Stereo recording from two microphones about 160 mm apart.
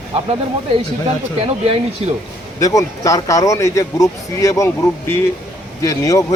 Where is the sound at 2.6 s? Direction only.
20° left (ahead or behind).